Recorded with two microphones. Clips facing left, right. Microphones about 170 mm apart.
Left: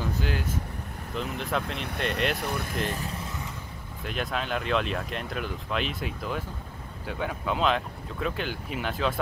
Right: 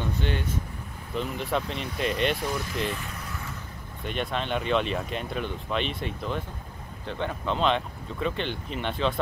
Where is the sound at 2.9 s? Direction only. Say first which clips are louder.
Left 2 dB; 35° left (ahead or behind).